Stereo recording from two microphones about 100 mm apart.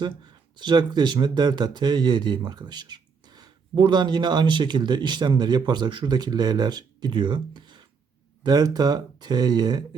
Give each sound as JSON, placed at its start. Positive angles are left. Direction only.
{"t": 0.0, "sound": "speech", "side_deg": -50}